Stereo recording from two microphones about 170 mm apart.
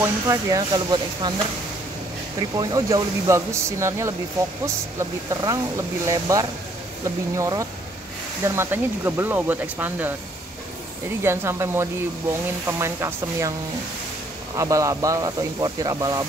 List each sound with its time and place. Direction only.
0.0 s speech: 20° right (ahead or behind)
2.5 s speech: 20° right (ahead or behind)
11.2 s speech: 15° right (ahead or behind)
14.6 s speech: 20° right (ahead or behind)